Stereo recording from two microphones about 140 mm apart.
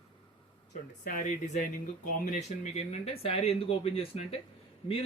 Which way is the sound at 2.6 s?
45° left (ahead or behind).